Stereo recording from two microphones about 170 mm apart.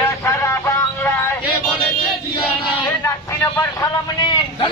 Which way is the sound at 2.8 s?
15° left (ahead or behind).